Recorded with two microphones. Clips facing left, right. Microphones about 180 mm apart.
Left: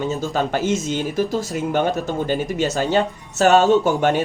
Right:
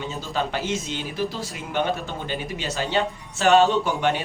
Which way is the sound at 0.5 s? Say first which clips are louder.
Left 7 dB; 45° left (ahead or behind).